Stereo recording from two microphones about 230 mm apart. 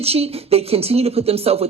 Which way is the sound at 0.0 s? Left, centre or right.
Right.